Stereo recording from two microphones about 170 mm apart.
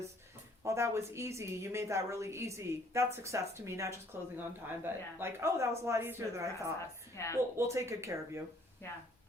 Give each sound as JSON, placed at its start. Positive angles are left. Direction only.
{"t": 0.6, "sound": "a woman's voice", "side_deg": -15}
{"t": 7.2, "sound": "a woman's voice", "side_deg": 15}
{"t": 7.5, "sound": "a woman's voice", "side_deg": -15}